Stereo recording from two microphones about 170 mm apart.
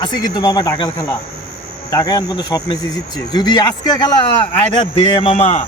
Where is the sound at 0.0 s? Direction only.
25° left (ahead or behind).